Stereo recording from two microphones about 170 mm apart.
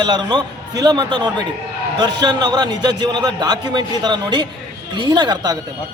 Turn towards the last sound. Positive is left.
turn(degrees=-25)  # may be behind; listen again after turning